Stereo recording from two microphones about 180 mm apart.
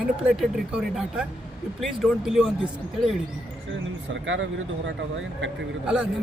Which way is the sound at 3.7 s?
90° right.